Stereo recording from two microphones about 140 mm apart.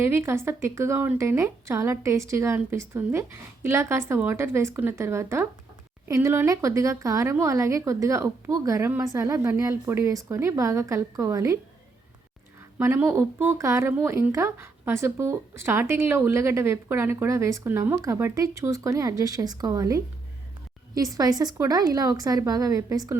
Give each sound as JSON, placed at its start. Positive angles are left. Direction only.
{"t": 0.0, "sound": "a woman's voice", "side_deg": -20}
{"t": 12.8, "sound": "a woman's voice", "side_deg": -15}